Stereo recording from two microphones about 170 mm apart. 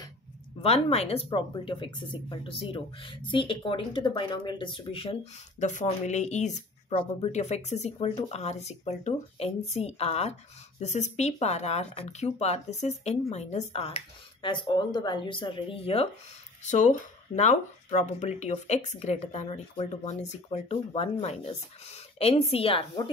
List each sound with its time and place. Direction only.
0.6 s speech: 40° left (ahead or behind)
16.6 s speech: 45° left (ahead or behind)